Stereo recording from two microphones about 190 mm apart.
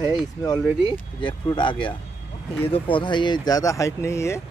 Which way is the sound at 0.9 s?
25° left (ahead or behind).